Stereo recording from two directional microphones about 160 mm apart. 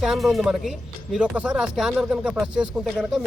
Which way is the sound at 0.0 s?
Centre (ahead or behind).